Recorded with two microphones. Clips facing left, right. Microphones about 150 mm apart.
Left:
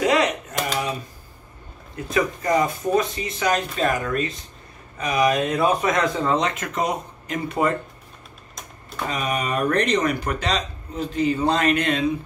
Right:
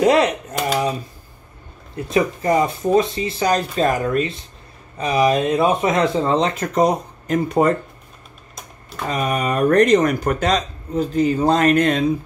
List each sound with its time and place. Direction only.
0.0 s typewriter: 35° right (ahead or behind)
2.0 s speech: 25° right (ahead or behind)
9.1 s speech: 40° right (ahead or behind)